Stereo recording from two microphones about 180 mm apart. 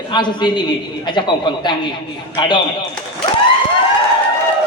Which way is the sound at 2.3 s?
25° left (ahead or behind).